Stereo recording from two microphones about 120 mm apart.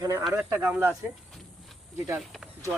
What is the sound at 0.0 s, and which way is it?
Speech, 25° right (ahead or behind).